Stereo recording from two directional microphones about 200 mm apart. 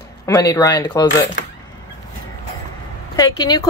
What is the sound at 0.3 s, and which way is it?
Speech, 15° left (ahead or behind).